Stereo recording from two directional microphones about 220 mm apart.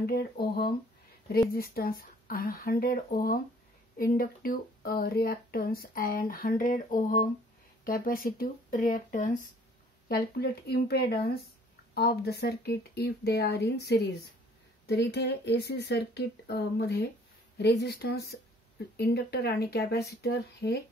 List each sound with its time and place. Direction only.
0.0 s speech: 45° left (ahead or behind)